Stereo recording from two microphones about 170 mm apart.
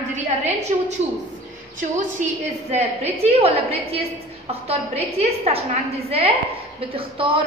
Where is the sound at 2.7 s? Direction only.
40° right (ahead or behind).